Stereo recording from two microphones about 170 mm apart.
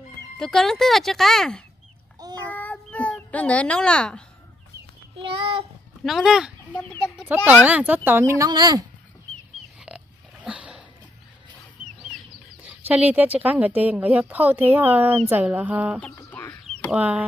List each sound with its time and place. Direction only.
0.4 s a child's voice: 5° left (ahead or behind)
5.1 s a child's voice: 30° right (ahead or behind)
6.0 s speech: centre (ahead or behind)
6.6 s chicken: 5° left (ahead or behind)
7.6 s speech: 10° right (ahead or behind)
9.8 s pig: 5° right (ahead or behind)
12.6 s speech: 10° right (ahead or behind)
16.2 s chicken: 15° left (ahead or behind)
16.9 s speech: 10° right (ahead or behind)